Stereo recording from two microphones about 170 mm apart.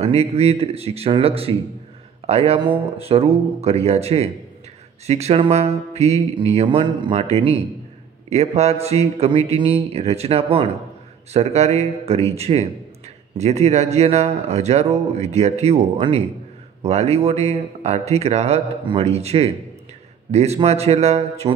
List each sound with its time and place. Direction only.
0.0 s speech: 35° right (ahead or behind)